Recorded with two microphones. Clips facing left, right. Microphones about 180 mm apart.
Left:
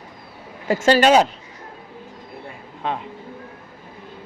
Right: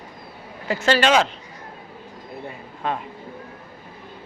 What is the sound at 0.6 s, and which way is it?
Speech, 45° left (ahead or behind).